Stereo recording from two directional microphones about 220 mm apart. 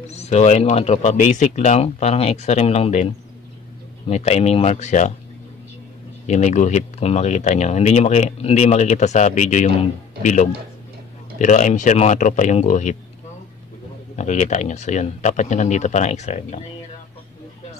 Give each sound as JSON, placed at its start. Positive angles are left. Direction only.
{"t": 0.1, "sound": "speech", "side_deg": 30}
{"t": 4.1, "sound": "speech", "side_deg": 30}
{"t": 6.2, "sound": "speech", "side_deg": 30}
{"t": 14.1, "sound": "speech", "side_deg": 30}